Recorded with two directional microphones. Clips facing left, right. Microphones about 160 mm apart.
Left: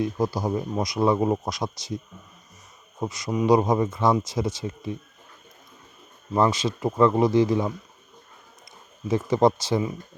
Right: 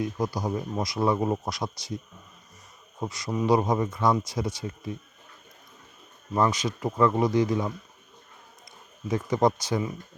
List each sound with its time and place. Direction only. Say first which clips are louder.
0.0 s speech: left 3 dB; 30° left (ahead or behind)
3.0 s speech: left 3 dB; 20° left (ahead or behind)
6.3 s speech: left 3 dB; 25° left (ahead or behind)
9.0 s speech: left 3 dB; 25° left (ahead or behind)